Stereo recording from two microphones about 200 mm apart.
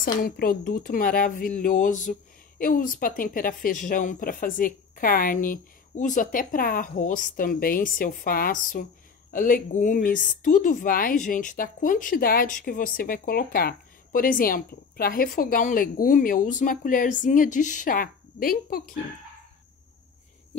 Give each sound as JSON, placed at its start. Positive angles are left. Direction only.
{"t": 0.0, "sound": "a woman's voice", "side_deg": 45}